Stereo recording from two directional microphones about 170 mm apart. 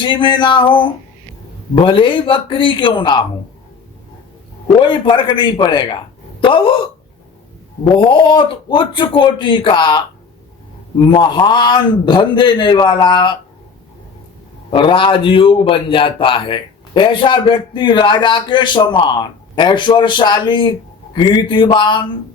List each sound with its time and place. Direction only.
0.0 s a man's voice: 30° left (ahead or behind)
4.8 s a man's voice: 30° left (ahead or behind)
7.9 s a man's voice: 30° left (ahead or behind)
11.0 s a man's voice: 25° left (ahead or behind)
14.7 s a man's voice: 30° left (ahead or behind)